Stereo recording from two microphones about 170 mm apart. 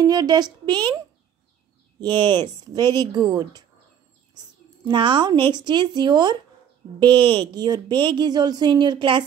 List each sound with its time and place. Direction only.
0.0 s a woman's voice: 25° right (ahead or behind)
4.8 s a woman's voice: 25° right (ahead or behind)